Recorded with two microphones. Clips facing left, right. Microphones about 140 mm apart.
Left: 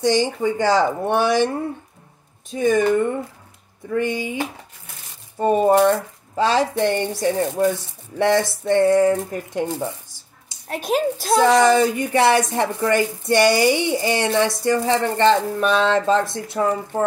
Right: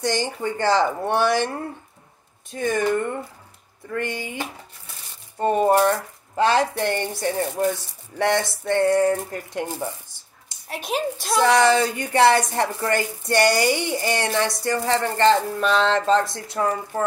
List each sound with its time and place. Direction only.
0.0 s speech: 15° left (ahead or behind)
2.5 s speech: 15° left (ahead or behind)
5.4 s speech: 15° left (ahead or behind)
10.7 s a child's voice: 50° left (ahead or behind)
11.4 s speech: 15° left (ahead or behind)
16.3 s speech: 25° left (ahead or behind)